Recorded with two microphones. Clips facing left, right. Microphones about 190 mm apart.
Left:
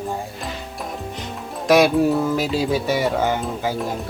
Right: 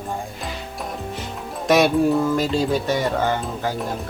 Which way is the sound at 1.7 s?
Centre (ahead or behind).